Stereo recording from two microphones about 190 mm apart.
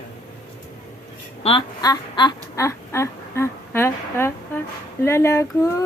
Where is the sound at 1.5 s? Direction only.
25° left (ahead or behind).